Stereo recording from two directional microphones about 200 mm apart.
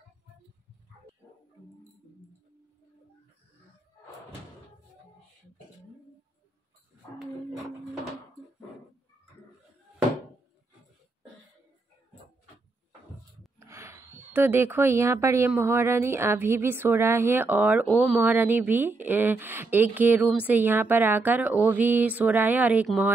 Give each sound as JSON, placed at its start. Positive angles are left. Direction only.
{"t": 13.6, "sound": "a woman's voice", "side_deg": -15}